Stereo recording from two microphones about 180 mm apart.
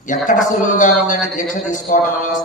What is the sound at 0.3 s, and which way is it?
A man's voice, 45° left (ahead or behind).